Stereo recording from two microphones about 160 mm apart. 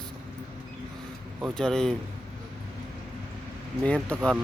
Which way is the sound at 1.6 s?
5° left (ahead or behind).